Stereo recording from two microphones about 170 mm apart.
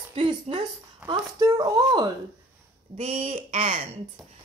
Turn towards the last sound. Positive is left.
turn(degrees=-40)  # may be behind; listen again after turning